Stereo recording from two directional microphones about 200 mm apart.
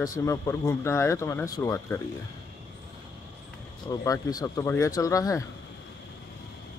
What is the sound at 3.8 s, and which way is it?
Speech, 20° left (ahead or behind).